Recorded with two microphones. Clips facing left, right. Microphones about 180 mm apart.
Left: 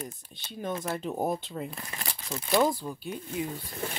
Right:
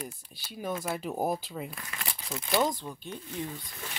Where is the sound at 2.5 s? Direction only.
5° left (ahead or behind).